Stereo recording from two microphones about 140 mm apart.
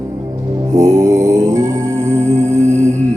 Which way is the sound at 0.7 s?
20° right (ahead or behind).